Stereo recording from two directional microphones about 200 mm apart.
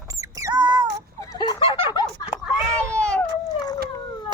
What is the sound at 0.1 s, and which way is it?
Rodents, 15° right (ahead or behind).